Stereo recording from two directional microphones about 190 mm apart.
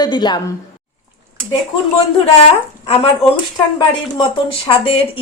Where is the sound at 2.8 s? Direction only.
30° left (ahead or behind).